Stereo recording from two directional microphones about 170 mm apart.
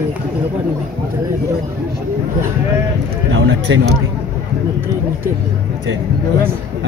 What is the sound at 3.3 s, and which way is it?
Speech, 85° right.